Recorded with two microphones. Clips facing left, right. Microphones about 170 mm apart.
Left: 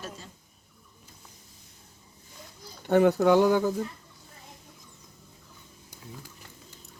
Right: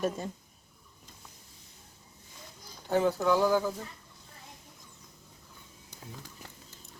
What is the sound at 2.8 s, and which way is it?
Speech, 70° left (ahead or behind).